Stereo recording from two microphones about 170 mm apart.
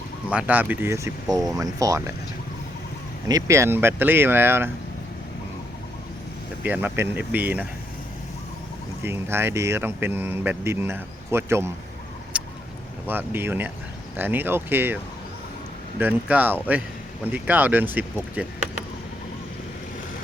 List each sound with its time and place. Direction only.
0.3 s speech: 10° right (ahead or behind)
3.2 s speech: 20° right (ahead or behind)
6.6 s speech: 10° right (ahead or behind)
9.0 s speech: 15° right (ahead or behind)
12.3 s vehicle: 5° right (ahead or behind)
13.1 s speech: 10° right (ahead or behind)
16.0 s speech: 10° right (ahead or behind)